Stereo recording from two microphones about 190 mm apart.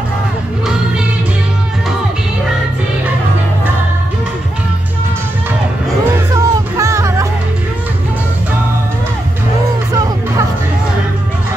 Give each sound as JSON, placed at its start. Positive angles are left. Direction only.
{"t": 6.3, "sound": "music", "side_deg": -15}